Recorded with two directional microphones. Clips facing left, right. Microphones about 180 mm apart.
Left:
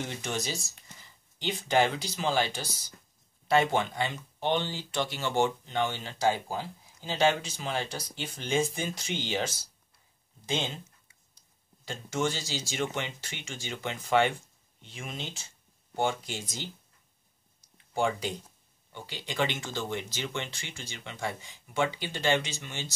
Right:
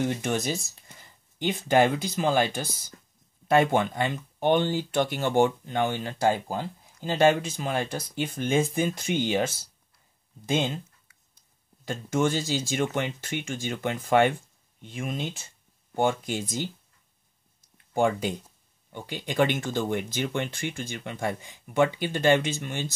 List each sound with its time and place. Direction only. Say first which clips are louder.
0.2 s speech: right 6 dB; 55° right (ahead or behind)
11.8 s speech: right 5 dB; 50° right (ahead or behind)
17.9 s speech: right 5 dB; 50° right (ahead or behind)